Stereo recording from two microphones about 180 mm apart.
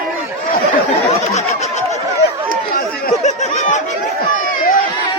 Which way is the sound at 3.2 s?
40° left (ahead or behind).